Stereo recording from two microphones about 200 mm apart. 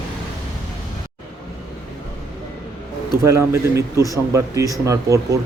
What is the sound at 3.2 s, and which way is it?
Speech, 15° right (ahead or behind).